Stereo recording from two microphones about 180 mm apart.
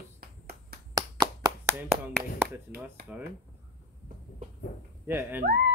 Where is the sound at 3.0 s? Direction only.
60° right (ahead or behind).